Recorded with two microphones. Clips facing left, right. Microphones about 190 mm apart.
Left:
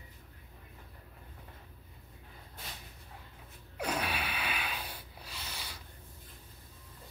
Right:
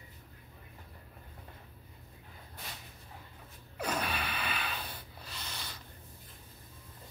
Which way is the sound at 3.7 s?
10° left (ahead or behind).